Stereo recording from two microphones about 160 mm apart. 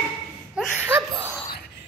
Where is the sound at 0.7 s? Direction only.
15° right (ahead or behind).